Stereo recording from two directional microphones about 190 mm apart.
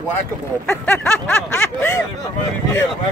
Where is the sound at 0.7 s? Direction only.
10° left (ahead or behind).